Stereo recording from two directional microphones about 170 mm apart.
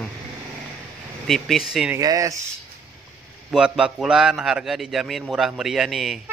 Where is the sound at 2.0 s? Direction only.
20° right (ahead or behind).